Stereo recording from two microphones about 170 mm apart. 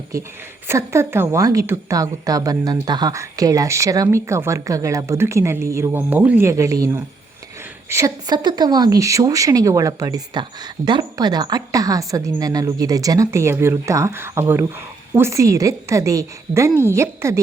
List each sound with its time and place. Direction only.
0.7 s a woman's voice: 15° right (ahead or behind)